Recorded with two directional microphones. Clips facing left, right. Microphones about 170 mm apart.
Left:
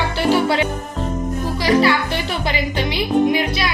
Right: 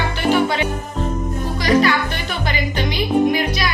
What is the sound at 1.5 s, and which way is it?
Music, 30° left (ahead or behind).